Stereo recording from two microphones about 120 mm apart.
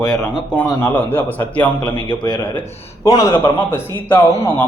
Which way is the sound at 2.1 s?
40° left (ahead or behind).